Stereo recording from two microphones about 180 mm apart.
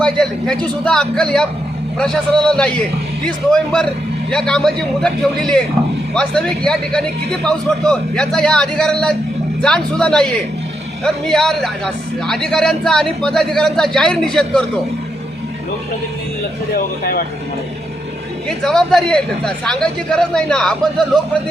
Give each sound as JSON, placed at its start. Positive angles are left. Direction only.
{"t": 0.0, "sound": "speech", "side_deg": 5}
{"t": 16.7, "sound": "speech", "side_deg": 55}
{"t": 18.4, "sound": "speech", "side_deg": 5}